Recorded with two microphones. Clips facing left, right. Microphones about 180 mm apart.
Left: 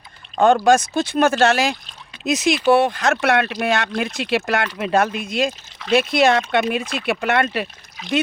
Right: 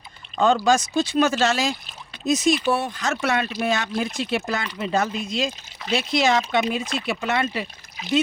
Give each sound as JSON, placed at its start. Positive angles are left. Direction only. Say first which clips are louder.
{"t": 0.3, "sound": "speech", "louder": "left 4 dB", "side_deg": 55}
{"t": 2.2, "sound": "speech", "louder": "left 3 dB", "side_deg": 75}